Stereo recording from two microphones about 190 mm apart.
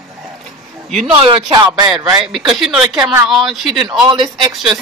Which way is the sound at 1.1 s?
25° right (ahead or behind).